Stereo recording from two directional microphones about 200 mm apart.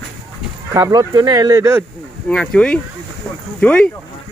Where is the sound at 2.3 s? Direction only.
5° left (ahead or behind).